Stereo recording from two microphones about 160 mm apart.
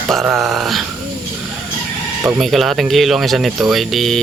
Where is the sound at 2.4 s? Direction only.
Centre (ahead or behind).